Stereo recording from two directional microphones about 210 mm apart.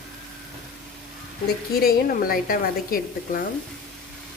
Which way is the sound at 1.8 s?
45° left (ahead or behind).